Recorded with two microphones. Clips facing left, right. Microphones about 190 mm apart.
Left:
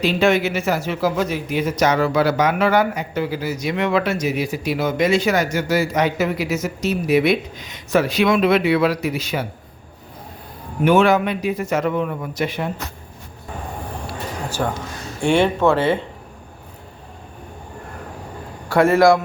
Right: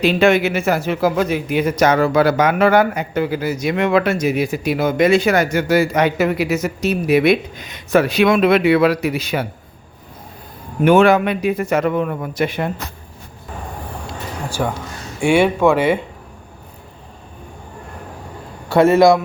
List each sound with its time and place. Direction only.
0.0 s a man's voice: 55° right (ahead or behind)
10.8 s a man's voice: 55° right (ahead or behind)
14.6 s a man's voice: 5° right (ahead or behind)
18.7 s a man's voice: 25° right (ahead or behind)